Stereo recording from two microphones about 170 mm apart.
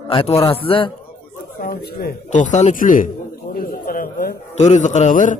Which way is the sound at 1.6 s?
65° left (ahead or behind).